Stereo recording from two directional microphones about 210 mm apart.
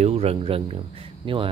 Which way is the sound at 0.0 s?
30° right (ahead or behind).